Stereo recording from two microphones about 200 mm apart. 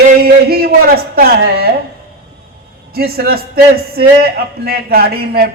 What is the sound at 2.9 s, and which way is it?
A man's voice, 50° right (ahead or behind).